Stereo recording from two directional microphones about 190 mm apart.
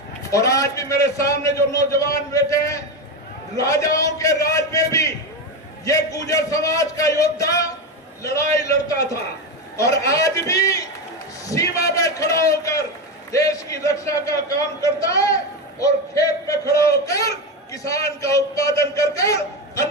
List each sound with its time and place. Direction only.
0.2 s a man's voice: 15° left (ahead or behind)